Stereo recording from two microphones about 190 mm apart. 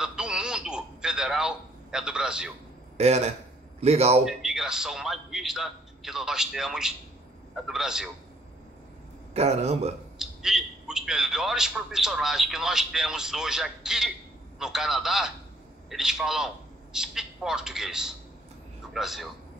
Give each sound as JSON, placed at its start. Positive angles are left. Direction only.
{"t": 0.0, "sound": "radio", "side_deg": -5}
{"t": 3.0, "sound": "a man's voice", "side_deg": -35}
{"t": 4.2, "sound": "a man's voice", "side_deg": 0}
{"t": 9.3, "sound": "a man's voice", "side_deg": -35}
{"t": 10.1, "sound": "a man's voice", "side_deg": -5}